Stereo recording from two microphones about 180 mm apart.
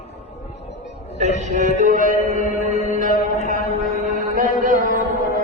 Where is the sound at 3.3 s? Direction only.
45° right (ahead or behind).